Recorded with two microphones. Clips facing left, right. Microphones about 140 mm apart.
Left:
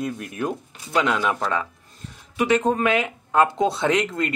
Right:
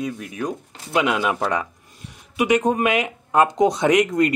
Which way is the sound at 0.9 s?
10° right (ahead or behind).